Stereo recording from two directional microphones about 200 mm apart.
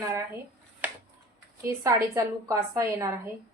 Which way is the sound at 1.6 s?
15° right (ahead or behind).